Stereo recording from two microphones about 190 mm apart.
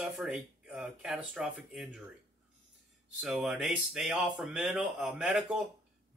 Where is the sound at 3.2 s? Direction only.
5° right (ahead or behind).